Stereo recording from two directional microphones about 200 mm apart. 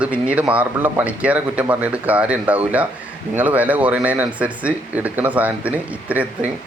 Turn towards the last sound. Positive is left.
turn(degrees=-5)  # may be behind; listen again after turning